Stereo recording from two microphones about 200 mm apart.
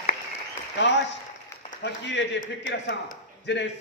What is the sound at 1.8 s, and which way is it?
Speech, 60° left (ahead or behind).